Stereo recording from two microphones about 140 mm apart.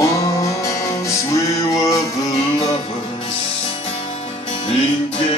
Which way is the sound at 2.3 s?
40° left (ahead or behind).